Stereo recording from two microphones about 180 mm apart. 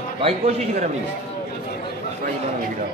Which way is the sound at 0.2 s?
35° right (ahead or behind).